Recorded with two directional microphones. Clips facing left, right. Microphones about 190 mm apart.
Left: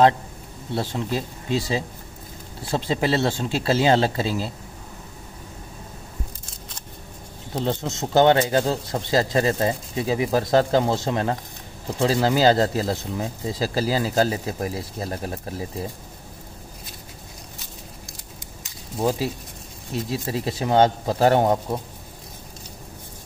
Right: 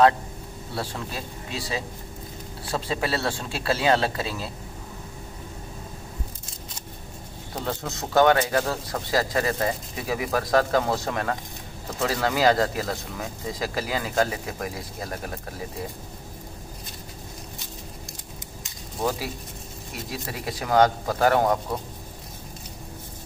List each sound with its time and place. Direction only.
0.7 s speech: 25° left (ahead or behind)
7.5 s speech: 20° left (ahead or behind)
18.9 s speech: 30° left (ahead or behind)